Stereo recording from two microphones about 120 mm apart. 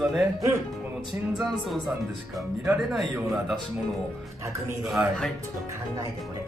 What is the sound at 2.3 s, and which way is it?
Speech, centre (ahead or behind).